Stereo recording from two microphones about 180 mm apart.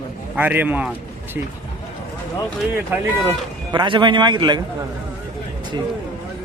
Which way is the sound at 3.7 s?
25° right (ahead or behind).